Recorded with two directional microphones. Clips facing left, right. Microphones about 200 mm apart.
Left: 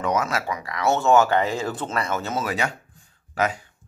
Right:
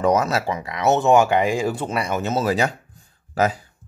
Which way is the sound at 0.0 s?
35° right (ahead or behind).